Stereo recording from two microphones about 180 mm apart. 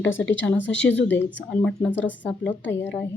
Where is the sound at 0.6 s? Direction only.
90° left.